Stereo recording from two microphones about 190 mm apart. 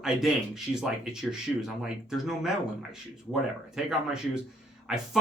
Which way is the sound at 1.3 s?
5° right (ahead or behind).